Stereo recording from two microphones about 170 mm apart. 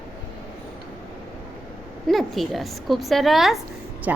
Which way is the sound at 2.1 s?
Centre (ahead or behind).